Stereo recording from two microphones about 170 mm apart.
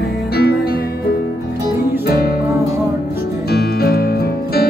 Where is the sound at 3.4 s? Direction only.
70° left (ahead or behind).